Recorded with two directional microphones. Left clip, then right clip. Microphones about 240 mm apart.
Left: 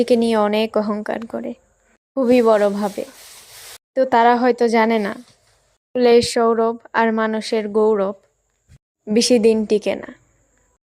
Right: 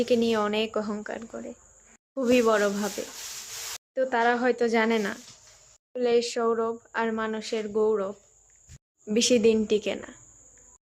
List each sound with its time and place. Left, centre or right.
0.0 s a woman's voice: left
3.9 s a woman's voice: left